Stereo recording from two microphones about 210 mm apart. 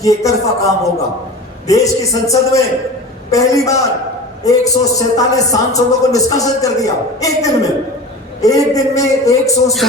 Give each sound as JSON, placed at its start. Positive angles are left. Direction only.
{"t": 0.0, "sound": "a man's voice", "side_deg": 15}